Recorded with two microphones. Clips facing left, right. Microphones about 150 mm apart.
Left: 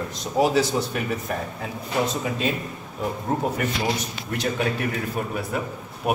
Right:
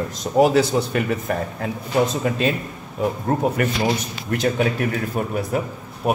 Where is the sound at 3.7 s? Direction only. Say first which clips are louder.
Right 4 dB; centre (ahead or behind).